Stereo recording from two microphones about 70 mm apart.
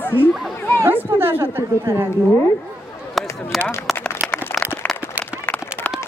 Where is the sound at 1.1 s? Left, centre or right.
Right.